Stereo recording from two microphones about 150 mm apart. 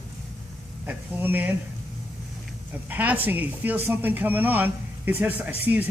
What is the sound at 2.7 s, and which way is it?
Speech, 10° right (ahead or behind).